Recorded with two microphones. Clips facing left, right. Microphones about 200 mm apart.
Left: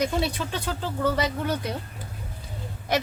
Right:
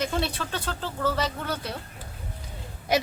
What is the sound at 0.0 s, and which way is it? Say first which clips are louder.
Speech: left 3 dB; 10° left (ahead or behind).